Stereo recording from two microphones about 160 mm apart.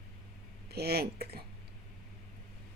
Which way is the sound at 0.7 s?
75° right (ahead or behind).